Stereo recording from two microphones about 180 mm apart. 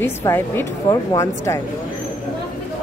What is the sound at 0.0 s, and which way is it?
A woman's voice, 15° left (ahead or behind).